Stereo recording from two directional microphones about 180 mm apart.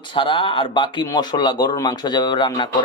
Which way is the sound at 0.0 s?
25° left (ahead or behind).